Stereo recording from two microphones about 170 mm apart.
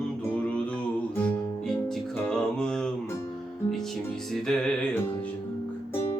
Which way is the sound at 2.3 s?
5° left (ahead or behind).